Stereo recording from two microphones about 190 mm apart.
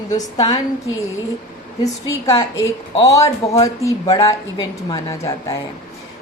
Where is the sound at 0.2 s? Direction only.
30° left (ahead or behind).